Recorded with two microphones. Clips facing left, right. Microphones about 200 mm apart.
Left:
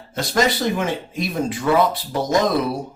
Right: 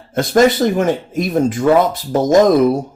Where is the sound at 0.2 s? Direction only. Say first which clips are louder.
Right 8 dB; 50° right (ahead or behind).